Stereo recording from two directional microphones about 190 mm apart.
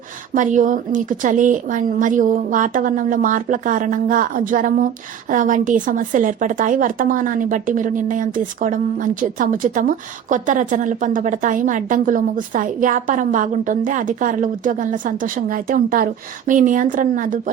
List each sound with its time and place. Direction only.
0.3 s a woman's voice: 40° right (ahead or behind)